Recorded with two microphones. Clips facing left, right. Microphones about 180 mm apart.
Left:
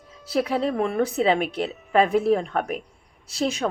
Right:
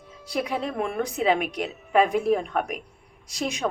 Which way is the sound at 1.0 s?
10° right (ahead or behind).